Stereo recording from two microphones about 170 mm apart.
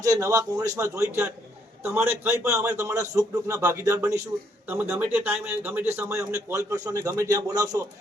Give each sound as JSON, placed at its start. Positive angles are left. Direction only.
{"t": 0.0, "sound": "a man's voice", "side_deg": -20}